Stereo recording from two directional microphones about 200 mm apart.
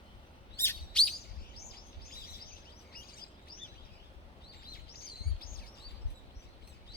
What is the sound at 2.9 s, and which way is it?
Chirp, 50° left (ahead or behind).